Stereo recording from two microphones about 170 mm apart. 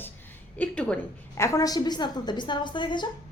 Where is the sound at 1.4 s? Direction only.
20° left (ahead or behind).